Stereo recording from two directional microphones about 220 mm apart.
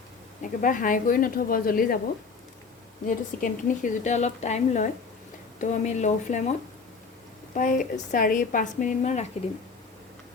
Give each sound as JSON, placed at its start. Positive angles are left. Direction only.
{"t": 0.6, "sound": "a woman's voice", "side_deg": 40}
{"t": 3.1, "sound": "a woman's voice", "side_deg": 35}
{"t": 7.5, "sound": "a woman's voice", "side_deg": 35}